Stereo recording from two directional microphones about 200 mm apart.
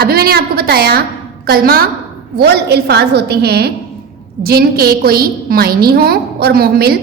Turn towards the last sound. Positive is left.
turn(degrees=-50)  # may be behind; listen again after turning